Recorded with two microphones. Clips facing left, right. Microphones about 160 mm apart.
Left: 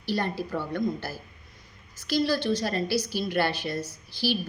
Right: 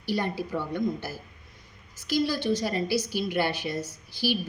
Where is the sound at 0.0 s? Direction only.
15° right (ahead or behind).